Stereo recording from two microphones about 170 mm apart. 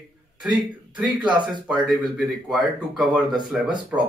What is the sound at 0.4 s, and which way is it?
Speech, 5° right (ahead or behind).